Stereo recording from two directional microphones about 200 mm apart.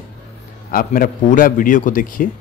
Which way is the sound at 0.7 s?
45° left (ahead or behind).